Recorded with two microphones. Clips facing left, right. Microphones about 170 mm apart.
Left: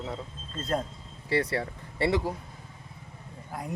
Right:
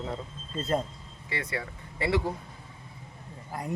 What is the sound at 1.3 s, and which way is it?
Speech, 35° left (ahead or behind).